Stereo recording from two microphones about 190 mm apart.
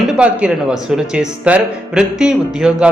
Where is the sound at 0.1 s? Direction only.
5° right (ahead or behind).